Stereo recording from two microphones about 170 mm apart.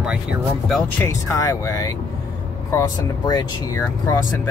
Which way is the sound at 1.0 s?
15° left (ahead or behind).